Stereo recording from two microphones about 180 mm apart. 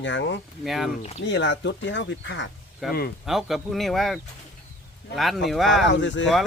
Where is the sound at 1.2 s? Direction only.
80° left.